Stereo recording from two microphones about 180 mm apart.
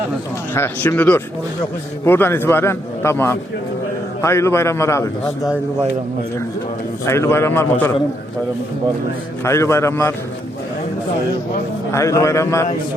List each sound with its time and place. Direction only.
0.5 s a man's voice: 10° left (ahead or behind)
7.0 s a man's voice: 15° left (ahead or behind)
9.4 s a man's voice: 15° left (ahead or behind)
11.9 s a man's voice: 15° left (ahead or behind)